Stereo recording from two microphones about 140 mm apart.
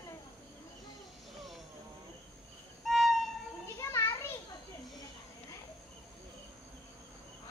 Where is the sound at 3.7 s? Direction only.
20° left (ahead or behind).